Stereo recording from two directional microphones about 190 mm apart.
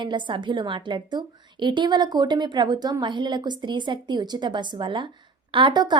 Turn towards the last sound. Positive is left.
turn(degrees=-25)  # may be behind; listen again after turning